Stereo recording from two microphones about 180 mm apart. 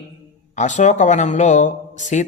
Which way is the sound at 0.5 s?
40° left (ahead or behind).